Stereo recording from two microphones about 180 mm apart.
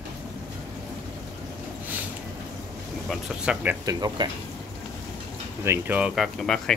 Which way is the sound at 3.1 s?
5° right (ahead or behind).